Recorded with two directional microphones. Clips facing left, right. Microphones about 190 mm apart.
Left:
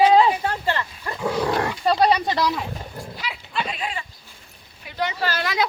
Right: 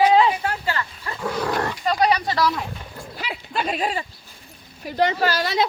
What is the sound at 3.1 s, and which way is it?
Dog, 45° right (ahead or behind).